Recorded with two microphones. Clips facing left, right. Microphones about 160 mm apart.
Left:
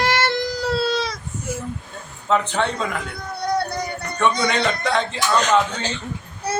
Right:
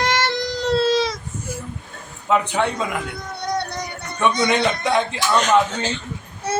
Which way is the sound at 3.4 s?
5° left (ahead or behind).